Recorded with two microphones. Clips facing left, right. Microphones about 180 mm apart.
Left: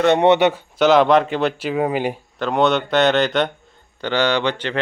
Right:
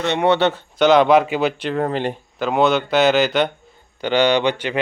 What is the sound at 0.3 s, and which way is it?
Speech, 15° left (ahead or behind).